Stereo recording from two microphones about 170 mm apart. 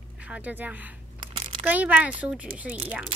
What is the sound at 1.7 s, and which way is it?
A child's voice, 10° right (ahead or behind).